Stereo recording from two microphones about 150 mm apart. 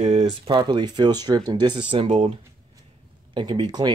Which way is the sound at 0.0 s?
50° right (ahead or behind).